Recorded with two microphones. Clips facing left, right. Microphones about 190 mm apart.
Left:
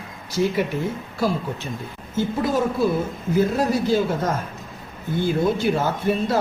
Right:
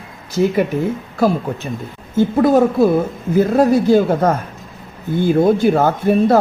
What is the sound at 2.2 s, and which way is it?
Speech, 55° right (ahead or behind).